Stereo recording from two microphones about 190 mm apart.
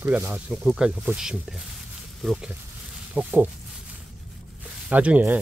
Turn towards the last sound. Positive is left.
turn(degrees=-10)  # may be behind; listen again after turning